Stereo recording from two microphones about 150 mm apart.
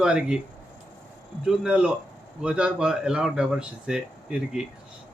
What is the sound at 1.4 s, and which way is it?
A man's voice, 5° right (ahead or behind).